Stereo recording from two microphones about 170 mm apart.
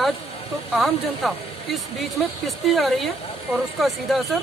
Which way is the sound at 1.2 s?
Centre (ahead or behind).